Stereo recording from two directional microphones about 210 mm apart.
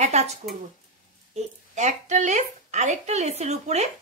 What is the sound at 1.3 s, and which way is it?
A woman's voice, 35° right (ahead or behind).